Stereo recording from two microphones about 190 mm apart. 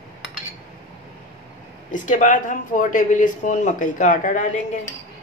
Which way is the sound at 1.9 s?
40° left (ahead or behind).